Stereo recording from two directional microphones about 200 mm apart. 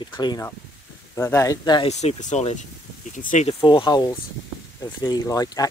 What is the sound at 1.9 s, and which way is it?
Speech, 35° left (ahead or behind).